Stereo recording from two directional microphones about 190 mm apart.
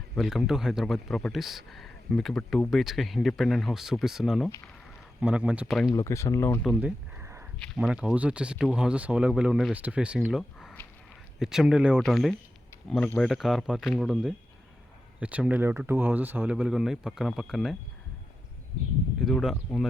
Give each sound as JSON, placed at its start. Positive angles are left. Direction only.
{"t": 0.2, "sound": "speech", "side_deg": 0}
{"t": 5.9, "sound": "speech", "side_deg": 15}
{"t": 6.7, "sound": "a sound", "side_deg": -10}
{"t": 7.9, "sound": "speech", "side_deg": -5}
{"t": 19.2, "sound": "speech", "side_deg": 0}